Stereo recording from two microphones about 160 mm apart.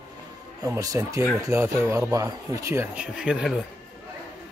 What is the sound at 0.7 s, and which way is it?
Speech, 20° right (ahead or behind).